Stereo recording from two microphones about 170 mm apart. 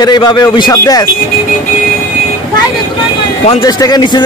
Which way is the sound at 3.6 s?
20° left (ahead or behind).